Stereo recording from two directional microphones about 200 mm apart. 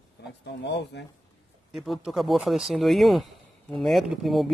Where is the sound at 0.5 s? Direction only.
60° left (ahead or behind).